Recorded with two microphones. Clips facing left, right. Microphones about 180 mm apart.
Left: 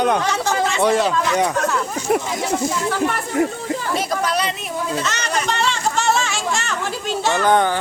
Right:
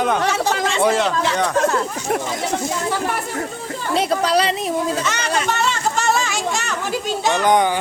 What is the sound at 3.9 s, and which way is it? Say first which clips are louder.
Speech: right 6 dB; 30° right (ahead or behind).